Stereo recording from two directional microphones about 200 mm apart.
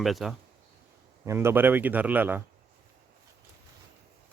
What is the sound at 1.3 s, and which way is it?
A man's voice, 10° right (ahead or behind).